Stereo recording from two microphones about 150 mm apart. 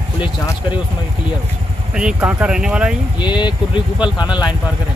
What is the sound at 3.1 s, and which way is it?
Speech, 30° left (ahead or behind).